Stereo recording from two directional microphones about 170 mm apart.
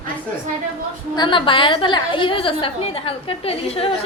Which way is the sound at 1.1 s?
25° left (ahead or behind).